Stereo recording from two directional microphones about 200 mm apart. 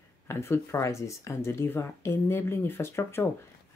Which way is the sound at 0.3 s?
15° left (ahead or behind).